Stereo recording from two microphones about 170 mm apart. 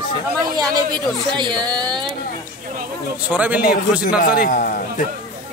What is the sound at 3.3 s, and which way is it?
Speech, 10° right (ahead or behind).